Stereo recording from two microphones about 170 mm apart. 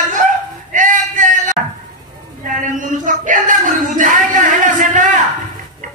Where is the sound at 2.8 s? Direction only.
50° right (ahead or behind).